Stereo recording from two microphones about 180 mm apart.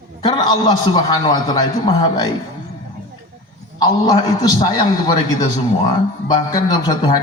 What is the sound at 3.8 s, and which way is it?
A man's voice, 20° left (ahead or behind).